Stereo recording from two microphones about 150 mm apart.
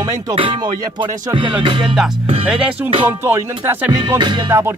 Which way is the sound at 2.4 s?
5° right (ahead or behind).